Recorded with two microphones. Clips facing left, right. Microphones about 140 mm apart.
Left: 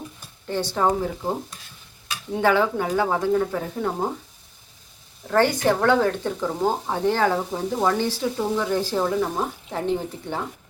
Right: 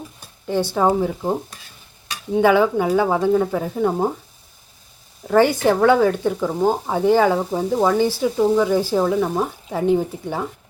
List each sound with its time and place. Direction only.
0.4 s speech: 10° right (ahead or behind)
2.4 s speech: 15° right (ahead or behind)
5.3 s speech: 10° right (ahead or behind)